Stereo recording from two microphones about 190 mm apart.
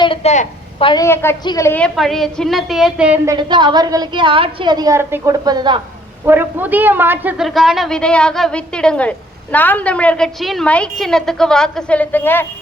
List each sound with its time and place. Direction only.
0.0 s a sound: 30° left (ahead or behind)
1.0 s a woman's voice: 10° left (ahead or behind); by 3.2 s 5° right (ahead or behind)
3.2 s a woman's voice: 25° right (ahead or behind)
6.2 s a woman's voice: 10° right (ahead or behind); by 12.5 s 10° left (ahead or behind)